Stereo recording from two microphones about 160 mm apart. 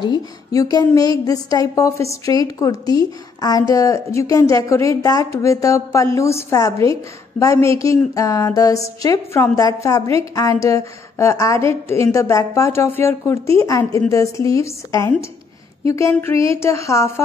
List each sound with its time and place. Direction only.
0.0 s a woman's voice: 25° left (ahead or behind)